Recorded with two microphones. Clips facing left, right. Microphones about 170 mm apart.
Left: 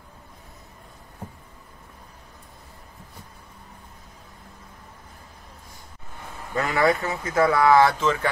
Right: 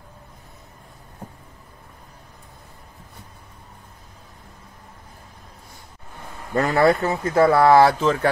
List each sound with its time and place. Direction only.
6.5 s speech: 35° right (ahead or behind)